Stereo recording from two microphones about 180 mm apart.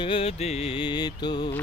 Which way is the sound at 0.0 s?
30° left (ahead or behind).